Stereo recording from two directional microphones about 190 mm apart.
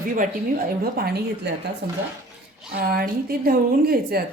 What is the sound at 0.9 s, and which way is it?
Speech, 55° right (ahead or behind).